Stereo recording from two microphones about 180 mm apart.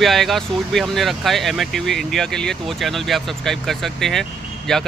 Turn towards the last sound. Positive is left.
turn(degrees=0)  # may be behind; listen again after turning